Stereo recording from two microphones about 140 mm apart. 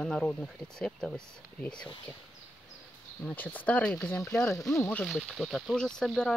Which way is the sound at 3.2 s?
10° left (ahead or behind).